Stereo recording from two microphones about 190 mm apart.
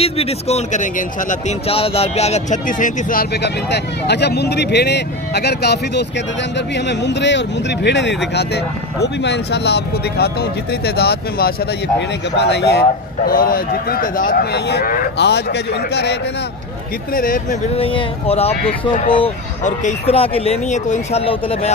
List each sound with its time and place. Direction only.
0.0 s speech: 30° left (ahead or behind); by 16.2 s 60° left (ahead or behind)
17.1 s speech: 45° left (ahead or behind)
17.7 s speech: 30° left (ahead or behind)